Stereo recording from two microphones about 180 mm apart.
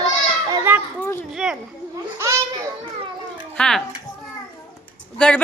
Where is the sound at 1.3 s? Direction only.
Centre (ahead or behind).